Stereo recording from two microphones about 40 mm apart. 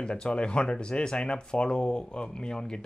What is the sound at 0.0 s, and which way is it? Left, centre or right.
Speech, left.